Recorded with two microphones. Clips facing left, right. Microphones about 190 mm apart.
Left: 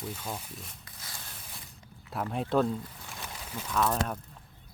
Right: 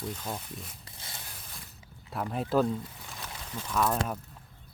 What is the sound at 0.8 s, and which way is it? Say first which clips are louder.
Zipper: right 1 dB; 25° right (ahead or behind).